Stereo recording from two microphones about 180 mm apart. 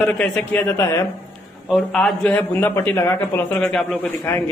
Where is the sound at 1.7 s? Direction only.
Centre (ahead or behind).